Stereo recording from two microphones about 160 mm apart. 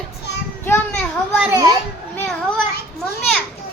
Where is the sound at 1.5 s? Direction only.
25° right (ahead or behind).